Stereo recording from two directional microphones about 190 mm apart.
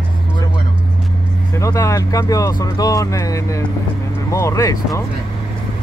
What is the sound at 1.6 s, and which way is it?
Speech, 15° left (ahead or behind).